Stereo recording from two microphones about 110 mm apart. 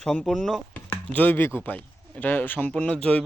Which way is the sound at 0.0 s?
5° left (ahead or behind).